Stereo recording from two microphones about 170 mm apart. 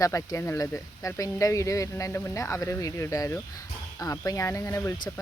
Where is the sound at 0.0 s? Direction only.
20° left (ahead or behind).